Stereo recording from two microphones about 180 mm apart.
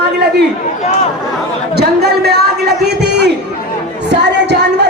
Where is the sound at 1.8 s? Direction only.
65° right (ahead or behind).